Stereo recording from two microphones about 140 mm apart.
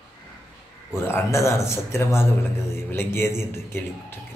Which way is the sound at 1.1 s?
20° left (ahead or behind).